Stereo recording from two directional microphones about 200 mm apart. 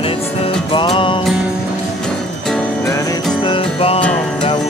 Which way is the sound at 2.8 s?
15° left (ahead or behind).